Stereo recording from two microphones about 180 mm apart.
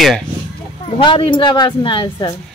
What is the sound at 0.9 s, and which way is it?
A woman's voice, 30° left (ahead or behind).